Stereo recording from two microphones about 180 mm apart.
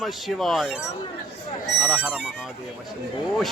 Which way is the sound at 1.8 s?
5° right (ahead or behind).